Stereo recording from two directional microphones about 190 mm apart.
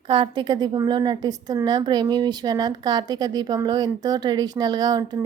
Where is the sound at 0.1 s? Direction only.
25° right (ahead or behind).